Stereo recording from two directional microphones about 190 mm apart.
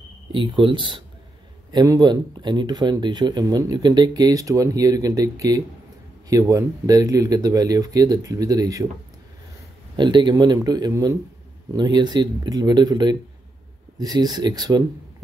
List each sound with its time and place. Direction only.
0.3 s speech: 25° right (ahead or behind)
9.9 s speech: 25° right (ahead or behind)